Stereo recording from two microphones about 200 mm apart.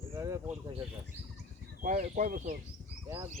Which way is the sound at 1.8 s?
40° right (ahead or behind).